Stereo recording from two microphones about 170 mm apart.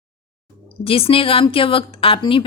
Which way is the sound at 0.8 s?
35° left (ahead or behind).